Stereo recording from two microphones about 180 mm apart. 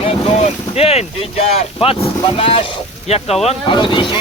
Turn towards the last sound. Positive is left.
turn(degrees=25)  # may be behind; listen again after turning